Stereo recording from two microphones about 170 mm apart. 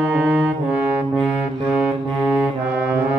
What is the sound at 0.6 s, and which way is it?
Music, 10° right (ahead or behind).